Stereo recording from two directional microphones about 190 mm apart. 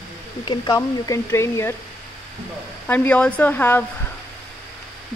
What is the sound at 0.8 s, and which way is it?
Speech, 15° left (ahead or behind).